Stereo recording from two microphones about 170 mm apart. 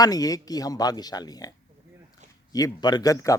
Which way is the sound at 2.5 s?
25° left (ahead or behind).